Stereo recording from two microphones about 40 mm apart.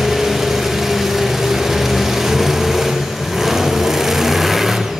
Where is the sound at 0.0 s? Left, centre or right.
Centre.